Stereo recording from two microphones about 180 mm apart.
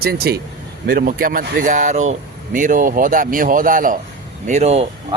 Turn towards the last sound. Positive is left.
turn(degrees=-40)  # may be behind; listen again after turning